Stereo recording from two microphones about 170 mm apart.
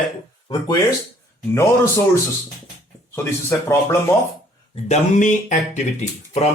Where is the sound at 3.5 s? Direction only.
15° left (ahead or behind).